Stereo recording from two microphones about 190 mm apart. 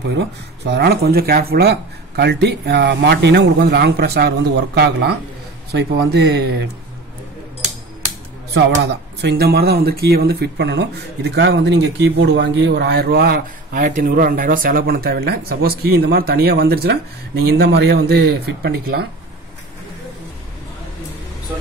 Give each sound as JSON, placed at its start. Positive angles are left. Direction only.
{"t": 0.1, "sound": "speech", "side_deg": -65}
{"t": 9.2, "sound": "speech", "side_deg": -60}